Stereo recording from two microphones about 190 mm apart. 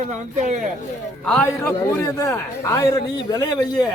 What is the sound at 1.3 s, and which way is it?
A man's voice, 10° left (ahead or behind).